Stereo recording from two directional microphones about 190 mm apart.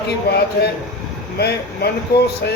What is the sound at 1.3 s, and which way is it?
Speech, 60° left (ahead or behind).